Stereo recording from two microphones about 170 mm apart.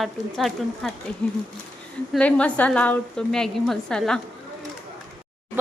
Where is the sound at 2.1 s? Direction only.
5° left (ahead or behind).